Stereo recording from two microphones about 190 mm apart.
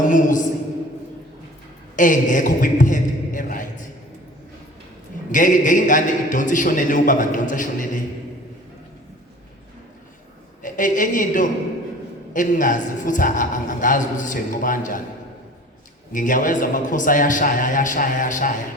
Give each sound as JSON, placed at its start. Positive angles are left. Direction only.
{"t": 0.1, "sound": "a man's voice", "side_deg": 45}
{"t": 2.0, "sound": "a man's voice", "side_deg": 45}
{"t": 5.3, "sound": "a man's voice", "side_deg": 45}
{"t": 10.6, "sound": "a woman's voice", "side_deg": 45}
{"t": 16.1, "sound": "a man's voice", "side_deg": 45}